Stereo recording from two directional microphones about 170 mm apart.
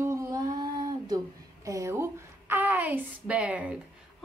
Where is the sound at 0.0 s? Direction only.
15° right (ahead or behind).